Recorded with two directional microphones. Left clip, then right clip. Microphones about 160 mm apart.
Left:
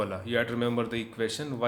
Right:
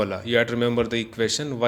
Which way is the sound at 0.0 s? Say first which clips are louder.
Right 7 dB; 40° right (ahead or behind).